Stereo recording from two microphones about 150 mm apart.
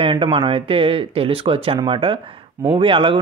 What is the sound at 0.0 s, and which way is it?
Speech, 35° right (ahead or behind).